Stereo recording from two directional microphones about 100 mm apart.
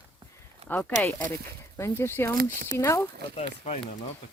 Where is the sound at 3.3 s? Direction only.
80° left.